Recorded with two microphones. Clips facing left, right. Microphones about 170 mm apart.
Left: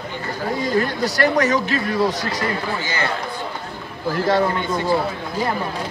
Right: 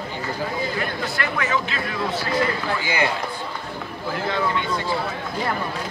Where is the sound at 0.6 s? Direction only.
40° left (ahead or behind).